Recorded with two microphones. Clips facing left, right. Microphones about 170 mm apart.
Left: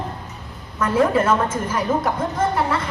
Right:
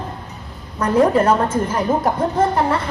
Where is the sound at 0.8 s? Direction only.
40° right (ahead or behind).